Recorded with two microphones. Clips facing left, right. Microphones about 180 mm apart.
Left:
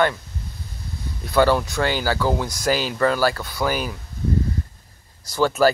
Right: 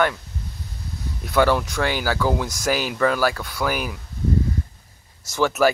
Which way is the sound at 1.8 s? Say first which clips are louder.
Left 1 dB; 5° right (ahead or behind).